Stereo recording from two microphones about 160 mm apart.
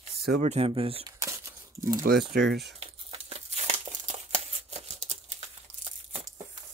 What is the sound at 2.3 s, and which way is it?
Speech, 90° right.